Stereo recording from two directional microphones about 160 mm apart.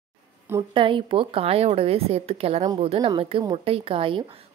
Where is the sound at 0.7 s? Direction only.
30° right (ahead or behind).